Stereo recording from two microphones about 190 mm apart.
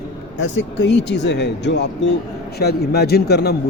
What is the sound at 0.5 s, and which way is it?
Speech, 70° left (ahead or behind).